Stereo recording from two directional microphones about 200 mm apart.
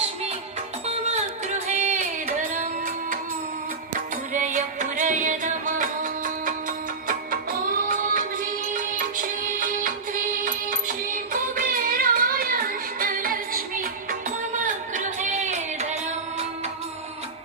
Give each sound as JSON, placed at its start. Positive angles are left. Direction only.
{"t": 0.9, "sound": "music", "side_deg": -35}
{"t": 4.3, "sound": "music", "side_deg": -40}